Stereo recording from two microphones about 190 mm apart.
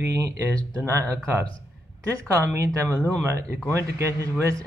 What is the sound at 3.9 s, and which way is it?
Speech, 15° right (ahead or behind).